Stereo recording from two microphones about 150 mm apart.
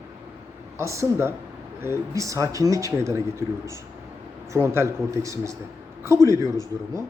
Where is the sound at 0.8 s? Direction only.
20° right (ahead or behind).